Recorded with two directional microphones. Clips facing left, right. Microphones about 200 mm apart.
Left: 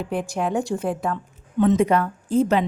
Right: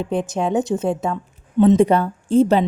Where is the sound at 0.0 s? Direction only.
20° right (ahead or behind).